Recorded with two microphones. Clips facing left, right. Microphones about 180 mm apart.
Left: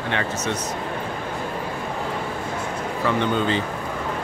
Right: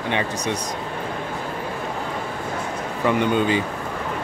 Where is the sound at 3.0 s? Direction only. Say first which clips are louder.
Right 3 dB; 15° right (ahead or behind).